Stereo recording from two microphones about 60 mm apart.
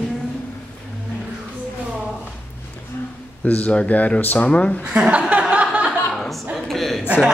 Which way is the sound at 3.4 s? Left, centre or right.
Left.